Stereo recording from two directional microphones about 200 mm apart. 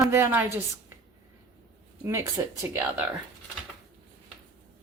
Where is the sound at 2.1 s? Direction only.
15° right (ahead or behind).